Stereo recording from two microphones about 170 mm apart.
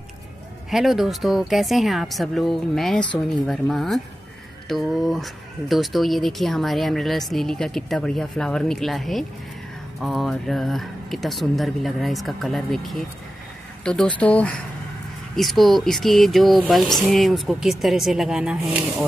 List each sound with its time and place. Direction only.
0.7 s speech: centre (ahead or behind)